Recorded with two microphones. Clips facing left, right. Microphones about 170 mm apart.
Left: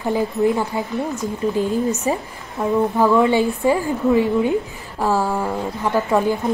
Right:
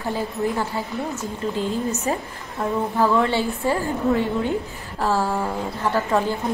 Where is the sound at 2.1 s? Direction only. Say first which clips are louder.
Left 3 dB; 10° left (ahead or behind).